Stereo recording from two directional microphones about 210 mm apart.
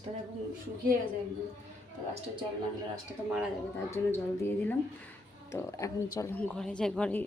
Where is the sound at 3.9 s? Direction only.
10° left (ahead or behind).